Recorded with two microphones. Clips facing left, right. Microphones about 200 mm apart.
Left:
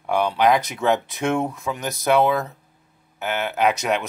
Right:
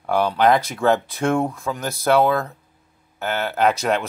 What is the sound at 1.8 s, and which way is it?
Speech, 15° left (ahead or behind).